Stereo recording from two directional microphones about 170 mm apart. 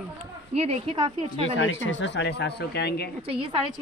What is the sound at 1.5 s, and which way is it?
Speech, 90° left.